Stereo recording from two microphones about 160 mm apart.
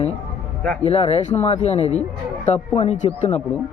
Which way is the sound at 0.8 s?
45° left (ahead or behind).